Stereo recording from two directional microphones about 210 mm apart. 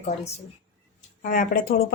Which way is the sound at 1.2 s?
40° left (ahead or behind).